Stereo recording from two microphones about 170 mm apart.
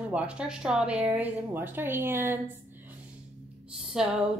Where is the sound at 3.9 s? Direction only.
5° right (ahead or behind).